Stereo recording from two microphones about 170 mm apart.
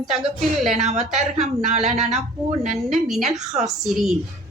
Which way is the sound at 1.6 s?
45° right (ahead or behind).